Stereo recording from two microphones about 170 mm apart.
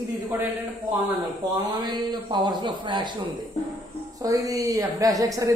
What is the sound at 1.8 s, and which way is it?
A woman's voice, 25° right (ahead or behind).